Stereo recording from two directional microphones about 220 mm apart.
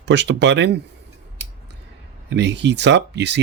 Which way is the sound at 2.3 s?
50° right (ahead or behind).